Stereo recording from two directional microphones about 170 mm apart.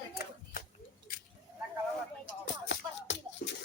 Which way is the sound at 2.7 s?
90° left.